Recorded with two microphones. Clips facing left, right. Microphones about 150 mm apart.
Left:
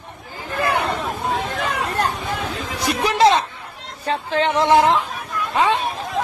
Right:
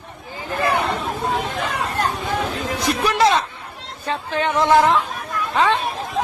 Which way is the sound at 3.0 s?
25° left (ahead or behind).